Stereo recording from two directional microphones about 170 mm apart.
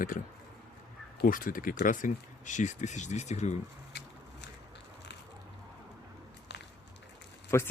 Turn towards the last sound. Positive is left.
turn(degrees=15)  # may be behind; listen again after turning